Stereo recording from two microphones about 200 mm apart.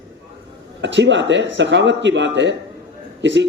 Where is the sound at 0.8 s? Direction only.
65° right (ahead or behind).